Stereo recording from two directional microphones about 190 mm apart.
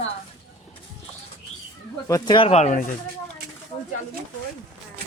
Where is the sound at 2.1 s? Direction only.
25° left (ahead or behind); by 2.9 s 40° left (ahead or behind).